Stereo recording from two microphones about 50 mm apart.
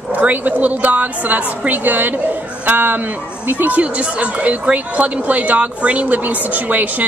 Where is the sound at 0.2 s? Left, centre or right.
Right.